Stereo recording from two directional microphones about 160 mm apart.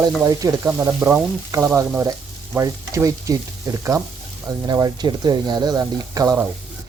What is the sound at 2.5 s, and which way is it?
Speech, 20° right (ahead or behind).